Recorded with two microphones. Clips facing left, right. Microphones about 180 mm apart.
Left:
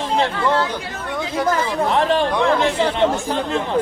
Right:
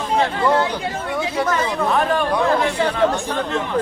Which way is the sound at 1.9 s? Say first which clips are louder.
Left 1 dB; 25° left (ahead or behind).